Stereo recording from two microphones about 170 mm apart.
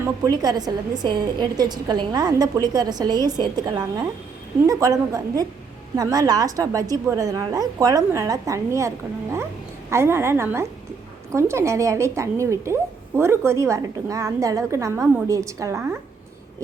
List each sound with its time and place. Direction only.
0.0 s a woman's voice: 20° right (ahead or behind)
9.9 s a woman's voice: 15° right (ahead or behind)